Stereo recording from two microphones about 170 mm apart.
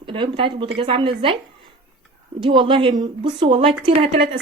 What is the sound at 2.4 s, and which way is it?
A woman's voice, 30° right (ahead or behind).